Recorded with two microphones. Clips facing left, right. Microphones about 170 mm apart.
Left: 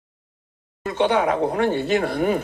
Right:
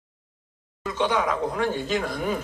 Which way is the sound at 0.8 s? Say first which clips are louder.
Left 5 dB; 60° left (ahead or behind).